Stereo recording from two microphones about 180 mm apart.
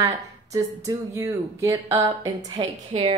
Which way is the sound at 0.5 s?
20° right (ahead or behind).